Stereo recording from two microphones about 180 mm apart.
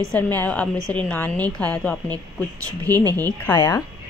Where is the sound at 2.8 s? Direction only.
20° right (ahead or behind).